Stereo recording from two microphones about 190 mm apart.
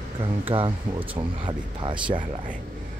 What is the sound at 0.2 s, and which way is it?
Speech, 30° right (ahead or behind).